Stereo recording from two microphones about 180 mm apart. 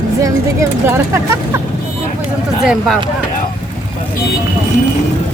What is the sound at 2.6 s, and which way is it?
Speech, 5° right (ahead or behind).